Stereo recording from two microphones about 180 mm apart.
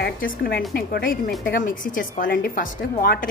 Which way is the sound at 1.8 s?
50° left (ahead or behind).